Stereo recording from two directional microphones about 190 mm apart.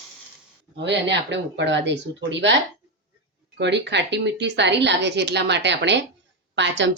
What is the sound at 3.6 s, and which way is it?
A woman's voice, 65° right (ahead or behind).